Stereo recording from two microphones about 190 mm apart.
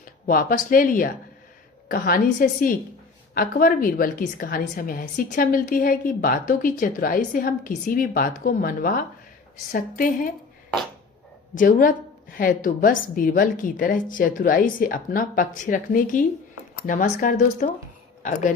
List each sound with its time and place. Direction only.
0.0 s a woman's voice: 50° left (ahead or behind)
11.5 s a woman's voice: 45° left (ahead or behind)